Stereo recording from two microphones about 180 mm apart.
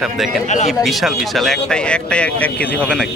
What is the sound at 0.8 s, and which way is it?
Speech, centre (ahead or behind).